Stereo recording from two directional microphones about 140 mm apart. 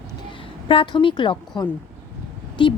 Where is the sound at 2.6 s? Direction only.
35° left (ahead or behind).